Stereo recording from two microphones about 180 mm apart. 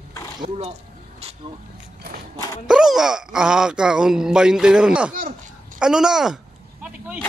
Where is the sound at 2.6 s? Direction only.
5° right (ahead or behind).